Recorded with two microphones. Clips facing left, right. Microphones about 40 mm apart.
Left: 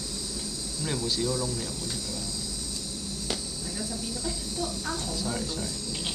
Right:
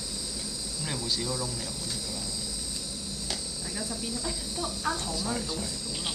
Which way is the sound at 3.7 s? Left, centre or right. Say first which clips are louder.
Right 1 dB; centre.